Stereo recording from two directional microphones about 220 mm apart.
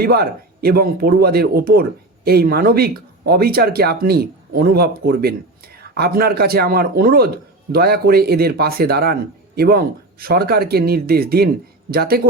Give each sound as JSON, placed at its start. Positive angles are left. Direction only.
{"t": 0.0, "sound": "speech", "side_deg": -45}